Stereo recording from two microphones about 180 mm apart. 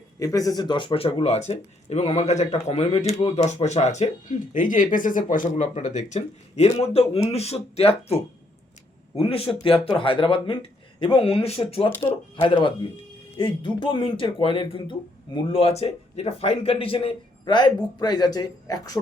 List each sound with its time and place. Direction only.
0.2 s speech: 20° left (ahead or behind)